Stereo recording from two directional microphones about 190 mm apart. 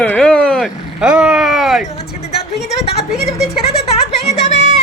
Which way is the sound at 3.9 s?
30° left (ahead or behind).